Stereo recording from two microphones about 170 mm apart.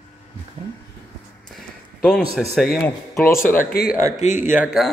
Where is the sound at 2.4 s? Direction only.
Centre (ahead or behind).